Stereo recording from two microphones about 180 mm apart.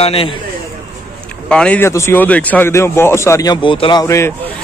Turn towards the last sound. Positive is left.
turn(degrees=15)  # may be behind; listen again after turning